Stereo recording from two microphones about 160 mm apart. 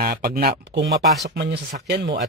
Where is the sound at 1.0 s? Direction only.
Centre (ahead or behind).